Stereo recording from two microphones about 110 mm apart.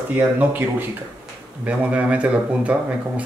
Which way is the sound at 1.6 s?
10° right (ahead or behind).